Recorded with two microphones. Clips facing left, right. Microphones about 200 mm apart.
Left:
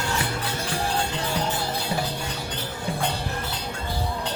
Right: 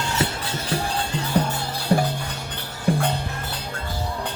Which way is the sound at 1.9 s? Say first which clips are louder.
Right 6 dB; 50° right (ahead or behind).